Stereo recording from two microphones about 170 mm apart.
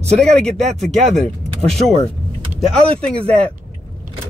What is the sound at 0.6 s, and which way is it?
Speech, 40° right (ahead or behind).